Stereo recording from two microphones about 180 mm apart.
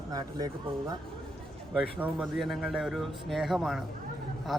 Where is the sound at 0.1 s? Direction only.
20° right (ahead or behind).